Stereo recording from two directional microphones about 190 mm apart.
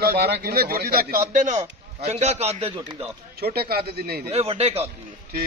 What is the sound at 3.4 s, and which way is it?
Speech, 55° right (ahead or behind).